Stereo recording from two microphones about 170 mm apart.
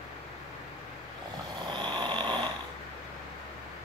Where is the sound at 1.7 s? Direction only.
30° right (ahead or behind).